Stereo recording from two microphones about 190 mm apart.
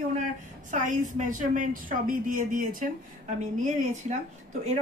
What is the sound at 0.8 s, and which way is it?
Speech, 45° right (ahead or behind).